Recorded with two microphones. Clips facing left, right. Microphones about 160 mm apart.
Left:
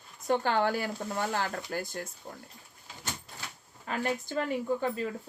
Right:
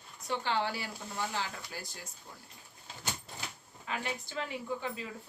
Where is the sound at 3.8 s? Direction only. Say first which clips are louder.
Left 6 dB; 50° left (ahead or behind).